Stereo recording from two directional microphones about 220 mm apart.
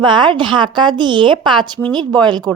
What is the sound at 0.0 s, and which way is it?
Speech, 20° right (ahead or behind).